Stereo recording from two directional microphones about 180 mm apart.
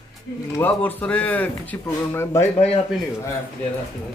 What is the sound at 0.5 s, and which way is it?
Speech, 10° left (ahead or behind).